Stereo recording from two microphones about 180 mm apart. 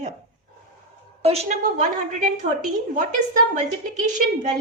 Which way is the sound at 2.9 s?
45° right (ahead or behind).